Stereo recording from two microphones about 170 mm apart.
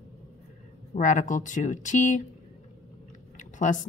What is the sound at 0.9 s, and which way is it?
Speech, 45° left (ahead or behind).